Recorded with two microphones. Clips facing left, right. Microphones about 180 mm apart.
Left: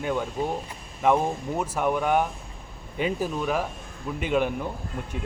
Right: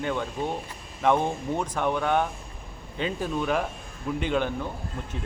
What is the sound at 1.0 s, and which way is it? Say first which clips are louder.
Speech: left 1 dB; 5° left (ahead or behind).